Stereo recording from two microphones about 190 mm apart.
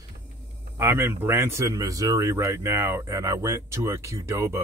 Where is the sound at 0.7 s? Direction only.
15° right (ahead or behind).